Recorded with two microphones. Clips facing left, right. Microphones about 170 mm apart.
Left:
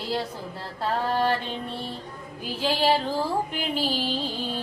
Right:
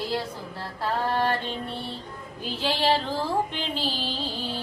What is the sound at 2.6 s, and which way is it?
Speech, 10° left (ahead or behind).